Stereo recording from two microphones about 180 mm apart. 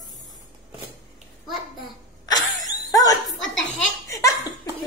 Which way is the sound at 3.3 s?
Centre (ahead or behind).